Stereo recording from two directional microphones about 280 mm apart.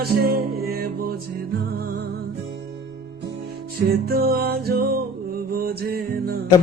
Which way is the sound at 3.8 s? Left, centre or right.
Right.